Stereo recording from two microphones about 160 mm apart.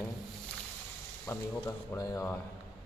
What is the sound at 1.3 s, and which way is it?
Speech, 20° left (ahead or behind).